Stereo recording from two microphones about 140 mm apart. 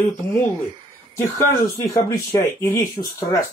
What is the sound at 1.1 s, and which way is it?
Speech, 20° left (ahead or behind).